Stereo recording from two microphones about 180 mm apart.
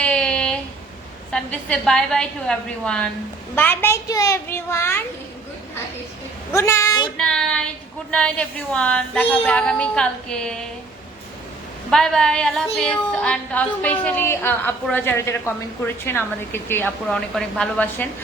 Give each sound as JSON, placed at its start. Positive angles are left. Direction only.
{"t": 0.0, "sound": "a sound", "side_deg": 5}
{"t": 1.3, "sound": "a woman's voice", "side_deg": 5}
{"t": 6.5, "sound": "a woman's voice", "side_deg": 15}
{"t": 7.2, "sound": "a woman's voice", "side_deg": 5}
{"t": 11.9, "sound": "a woman's voice", "side_deg": 5}